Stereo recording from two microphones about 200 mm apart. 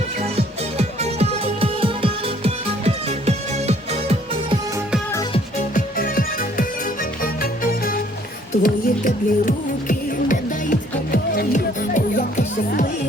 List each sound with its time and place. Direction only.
0.2 s music: 30° right (ahead or behind)
5.3 s music: 40° left (ahead or behind)